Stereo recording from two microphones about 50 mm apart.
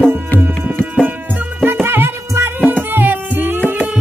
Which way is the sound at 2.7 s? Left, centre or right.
Right.